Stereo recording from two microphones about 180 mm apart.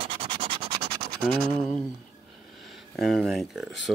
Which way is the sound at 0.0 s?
30° right (ahead or behind).